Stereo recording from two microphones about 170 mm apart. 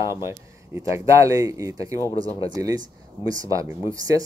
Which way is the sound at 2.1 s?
30° left (ahead or behind).